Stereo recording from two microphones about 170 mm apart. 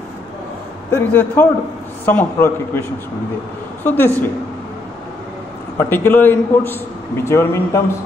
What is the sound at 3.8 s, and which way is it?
Speech, 10° left (ahead or behind).